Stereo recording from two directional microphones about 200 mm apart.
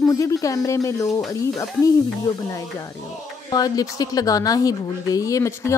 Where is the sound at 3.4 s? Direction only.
20° left (ahead or behind).